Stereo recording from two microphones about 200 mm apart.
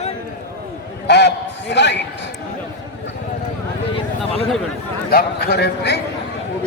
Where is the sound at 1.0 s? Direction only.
60° left (ahead or behind).